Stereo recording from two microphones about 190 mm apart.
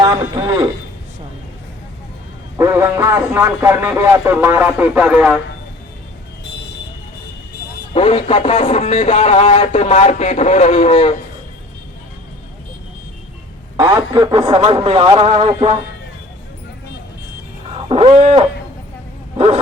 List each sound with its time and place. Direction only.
0.0 s a man's voice: 25° right (ahead or behind)
2.6 s speech: 15° right (ahead or behind)
7.9 s speech: 30° left (ahead or behind)
13.7 s speech: 20° right (ahead or behind)
17.8 s wild animals: 30° right (ahead or behind)